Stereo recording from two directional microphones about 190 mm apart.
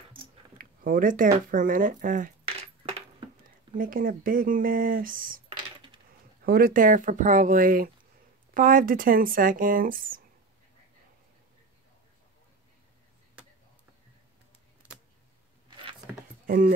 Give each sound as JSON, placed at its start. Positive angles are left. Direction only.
{"t": 0.6, "sound": "speech", "side_deg": -45}
{"t": 2.8, "sound": "coin", "side_deg": -30}
{"t": 3.7, "sound": "speech", "side_deg": -45}
{"t": 6.4, "sound": "speech", "side_deg": -50}
{"t": 16.4, "sound": "speech", "side_deg": -45}